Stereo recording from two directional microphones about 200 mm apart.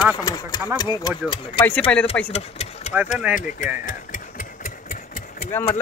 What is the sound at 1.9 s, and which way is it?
Speech, 5° left (ahead or behind).